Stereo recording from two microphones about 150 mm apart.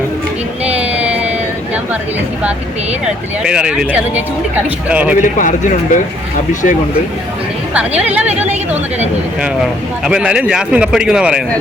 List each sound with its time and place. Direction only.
0.8 s a sound: 10° right (ahead or behind)
3.0 s speech: 5° right (ahead or behind)
5.2 s speech: 60° left (ahead or behind)
7.7 s speech: 10° right (ahead or behind)
10.0 s speech: 5° right (ahead or behind)